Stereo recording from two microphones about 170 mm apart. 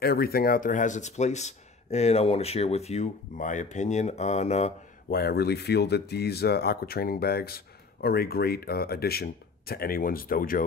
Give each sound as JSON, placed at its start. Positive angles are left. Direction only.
{"t": 0.0, "sound": "speech", "side_deg": 65}
{"t": 5.1, "sound": "speech", "side_deg": 65}